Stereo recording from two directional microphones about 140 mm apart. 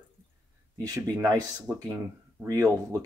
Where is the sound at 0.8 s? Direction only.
25° right (ahead or behind).